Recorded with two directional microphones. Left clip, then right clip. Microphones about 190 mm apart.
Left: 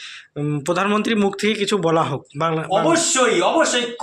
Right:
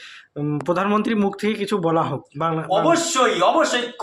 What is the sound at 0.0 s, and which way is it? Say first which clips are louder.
Speech: left 1 dB; 5° right (ahead or behind).